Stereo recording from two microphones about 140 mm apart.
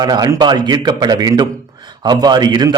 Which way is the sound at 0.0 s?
30° right (ahead or behind).